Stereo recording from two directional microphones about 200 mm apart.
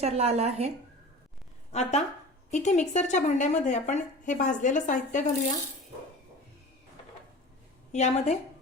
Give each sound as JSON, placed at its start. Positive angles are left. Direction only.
{"t": 0.0, "sound": "speech", "side_deg": -35}
{"t": 1.7, "sound": "a woman's voice", "side_deg": 35}
{"t": 7.9, "sound": "a woman's voice", "side_deg": 35}